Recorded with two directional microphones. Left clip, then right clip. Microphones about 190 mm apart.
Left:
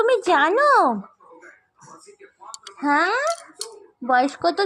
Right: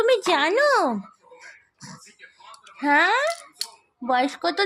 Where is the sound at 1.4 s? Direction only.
35° right (ahead or behind).